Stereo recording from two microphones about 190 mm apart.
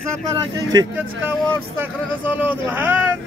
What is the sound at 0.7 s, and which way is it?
Speech, 20° right (ahead or behind).